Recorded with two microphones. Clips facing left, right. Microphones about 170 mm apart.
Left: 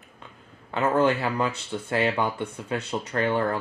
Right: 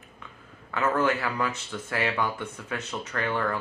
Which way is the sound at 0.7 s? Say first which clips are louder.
Left 3 dB; 30° left (ahead or behind).